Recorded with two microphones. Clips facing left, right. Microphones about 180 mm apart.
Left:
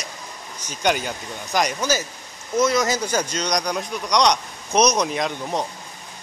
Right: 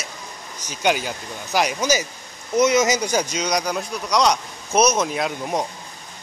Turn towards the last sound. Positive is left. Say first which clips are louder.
# right 1 dB
turn(degrees=-10)  # may be behind; listen again after turning